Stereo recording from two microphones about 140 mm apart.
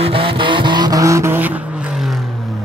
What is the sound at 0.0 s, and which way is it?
Vehicle, 40° right (ahead or behind).